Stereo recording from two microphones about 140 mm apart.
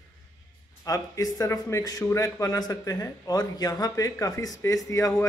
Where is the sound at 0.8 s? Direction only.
25° left (ahead or behind).